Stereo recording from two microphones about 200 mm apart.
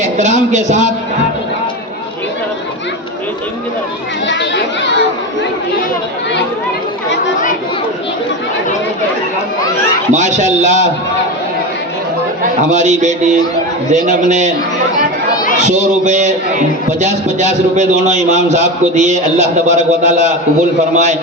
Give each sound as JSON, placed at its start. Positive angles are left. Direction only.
{"t": 0.0, "sound": "a man's voice", "side_deg": -35}
{"t": 4.3, "sound": "chatter", "side_deg": 65}
{"t": 10.1, "sound": "a man's voice", "side_deg": -35}
{"t": 12.4, "sound": "a man's voice", "side_deg": -35}
{"t": 15.6, "sound": "a man's voice", "side_deg": -35}